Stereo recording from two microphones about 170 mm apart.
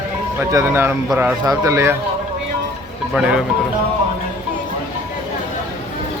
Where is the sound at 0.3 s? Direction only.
15° right (ahead or behind).